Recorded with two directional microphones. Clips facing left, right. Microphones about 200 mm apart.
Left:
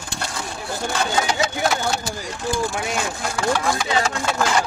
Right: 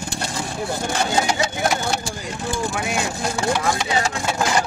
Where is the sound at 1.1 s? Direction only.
15° right (ahead or behind).